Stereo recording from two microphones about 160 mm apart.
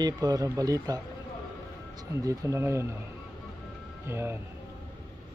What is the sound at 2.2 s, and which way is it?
Speech, 20° right (ahead or behind).